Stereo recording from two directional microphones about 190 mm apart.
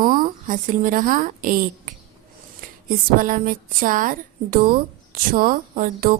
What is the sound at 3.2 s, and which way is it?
Speech, 45° right (ahead or behind).